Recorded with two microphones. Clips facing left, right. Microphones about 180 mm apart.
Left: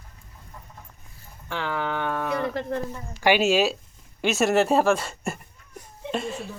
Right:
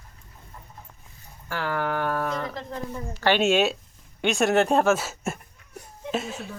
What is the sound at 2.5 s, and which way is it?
Speech, 65° left (ahead or behind).